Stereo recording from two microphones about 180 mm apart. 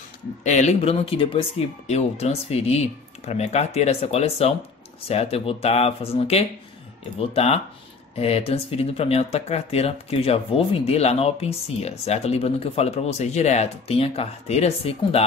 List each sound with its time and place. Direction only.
0.4 s speech: 40° left (ahead or behind)